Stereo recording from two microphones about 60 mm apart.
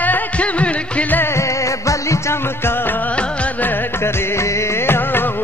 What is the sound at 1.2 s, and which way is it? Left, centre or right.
Music, left.